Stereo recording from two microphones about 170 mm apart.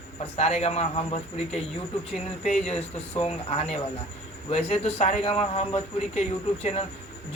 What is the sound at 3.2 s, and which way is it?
A man's voice, 35° left (ahead or behind).